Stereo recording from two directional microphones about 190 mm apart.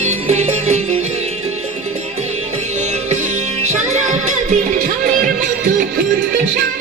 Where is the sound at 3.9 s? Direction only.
40° right (ahead or behind).